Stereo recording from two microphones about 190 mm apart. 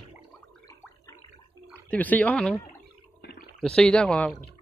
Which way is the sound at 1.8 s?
10° left (ahead or behind).